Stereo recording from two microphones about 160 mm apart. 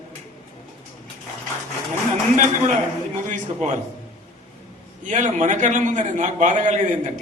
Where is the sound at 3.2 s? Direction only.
50° right (ahead or behind).